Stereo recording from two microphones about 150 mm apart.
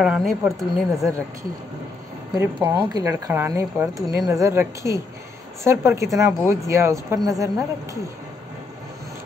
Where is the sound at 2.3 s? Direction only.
15° right (ahead or behind).